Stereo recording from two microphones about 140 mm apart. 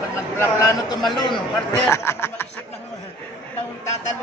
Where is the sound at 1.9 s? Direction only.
20° left (ahead or behind).